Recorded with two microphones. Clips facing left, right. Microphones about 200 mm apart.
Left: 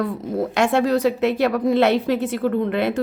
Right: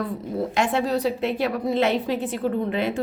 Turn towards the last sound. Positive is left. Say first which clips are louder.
# left 4 dB
turn(degrees=70)  # may be behind; listen again after turning